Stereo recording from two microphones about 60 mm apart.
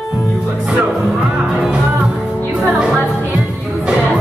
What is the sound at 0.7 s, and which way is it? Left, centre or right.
Music, centre.